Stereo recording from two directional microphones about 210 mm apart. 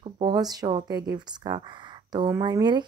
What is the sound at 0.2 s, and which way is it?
Speech, 20° right (ahead or behind).